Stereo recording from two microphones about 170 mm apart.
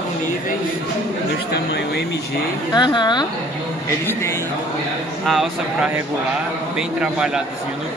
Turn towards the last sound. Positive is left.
turn(degrees=-5)  # may be behind; listen again after turning